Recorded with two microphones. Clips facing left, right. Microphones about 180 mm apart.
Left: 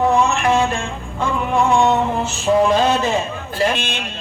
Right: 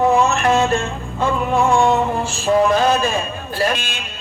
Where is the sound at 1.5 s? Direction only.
Centre (ahead or behind).